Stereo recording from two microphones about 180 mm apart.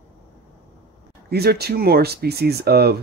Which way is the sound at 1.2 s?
60° right (ahead or behind).